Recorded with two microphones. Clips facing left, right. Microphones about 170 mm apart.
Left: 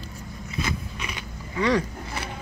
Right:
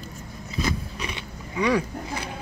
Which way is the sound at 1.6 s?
10° right (ahead or behind).